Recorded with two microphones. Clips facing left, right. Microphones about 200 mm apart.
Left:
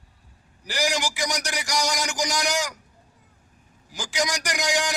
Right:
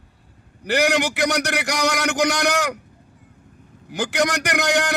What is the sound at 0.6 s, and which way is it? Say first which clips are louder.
A man's voice: right 7 dB; 60° right (ahead or behind).